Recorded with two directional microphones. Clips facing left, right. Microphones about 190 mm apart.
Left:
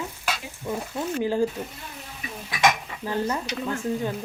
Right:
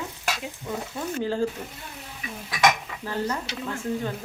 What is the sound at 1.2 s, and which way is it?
Speech, 15° left (ahead or behind).